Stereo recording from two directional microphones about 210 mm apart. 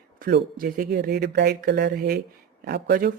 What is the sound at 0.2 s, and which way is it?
Speech, 50° right (ahead or behind).